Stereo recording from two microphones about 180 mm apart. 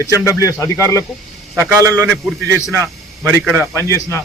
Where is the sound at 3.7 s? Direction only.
15° left (ahead or behind).